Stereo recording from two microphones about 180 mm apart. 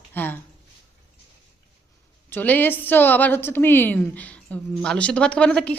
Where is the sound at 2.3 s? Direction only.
10° left (ahead or behind).